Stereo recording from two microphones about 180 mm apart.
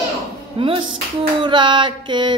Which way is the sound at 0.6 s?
30° right (ahead or behind).